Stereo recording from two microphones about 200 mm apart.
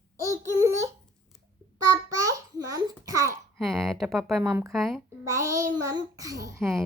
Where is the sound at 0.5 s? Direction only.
15° right (ahead or behind).